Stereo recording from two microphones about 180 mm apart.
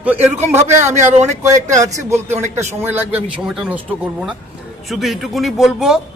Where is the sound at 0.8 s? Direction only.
40° right (ahead or behind).